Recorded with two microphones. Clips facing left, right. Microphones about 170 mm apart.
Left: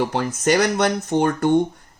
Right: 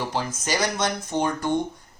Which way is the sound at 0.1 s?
60° left (ahead or behind).